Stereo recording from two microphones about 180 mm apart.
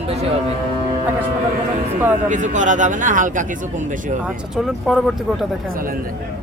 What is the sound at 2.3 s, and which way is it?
Speech, 45° right (ahead or behind).